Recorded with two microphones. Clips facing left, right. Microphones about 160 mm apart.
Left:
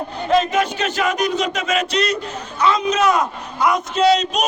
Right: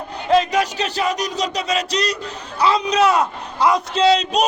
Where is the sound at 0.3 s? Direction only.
35° right (ahead or behind).